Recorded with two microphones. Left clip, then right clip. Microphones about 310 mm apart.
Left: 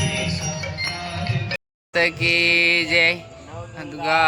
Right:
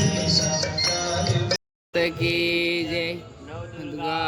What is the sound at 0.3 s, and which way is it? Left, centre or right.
Music, right.